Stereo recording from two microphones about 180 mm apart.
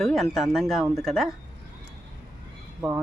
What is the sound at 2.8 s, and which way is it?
Speech, centre (ahead or behind).